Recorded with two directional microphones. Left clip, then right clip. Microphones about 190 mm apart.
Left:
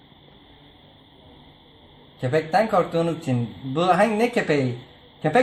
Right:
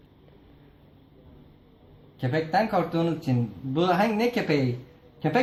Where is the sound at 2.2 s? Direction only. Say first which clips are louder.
Left 4 dB; 20° left (ahead or behind).